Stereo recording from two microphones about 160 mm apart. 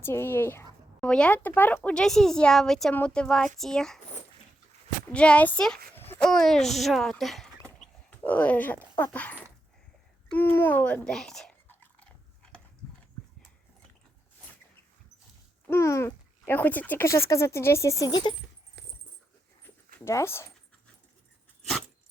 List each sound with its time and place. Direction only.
0.0 s speech: 15° left (ahead or behind)
5.1 s speech: 5° left (ahead or behind)
10.3 s chewing: 10° left (ahead or behind)
15.7 s speech: 15° left (ahead or behind)
18.8 s dog: 90° right
19.6 s dog: 15° left (ahead or behind)